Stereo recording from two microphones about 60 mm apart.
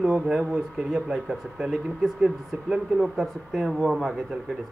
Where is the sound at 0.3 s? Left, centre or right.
Centre.